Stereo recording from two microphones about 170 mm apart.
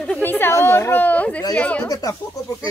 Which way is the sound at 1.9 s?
20° left (ahead or behind).